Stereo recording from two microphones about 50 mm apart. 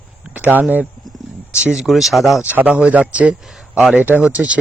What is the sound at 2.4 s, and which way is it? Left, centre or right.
A man's voice, right.